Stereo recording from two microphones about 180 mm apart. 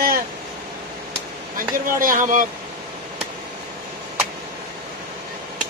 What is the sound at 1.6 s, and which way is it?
Speech, 50° right (ahead or behind).